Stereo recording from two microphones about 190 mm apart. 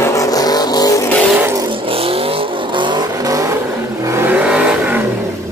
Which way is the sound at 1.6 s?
30° right (ahead or behind).